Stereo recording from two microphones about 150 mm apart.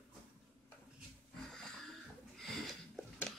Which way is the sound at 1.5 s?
5° left (ahead or behind).